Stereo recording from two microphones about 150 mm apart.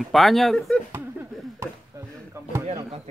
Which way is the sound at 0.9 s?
15° right (ahead or behind).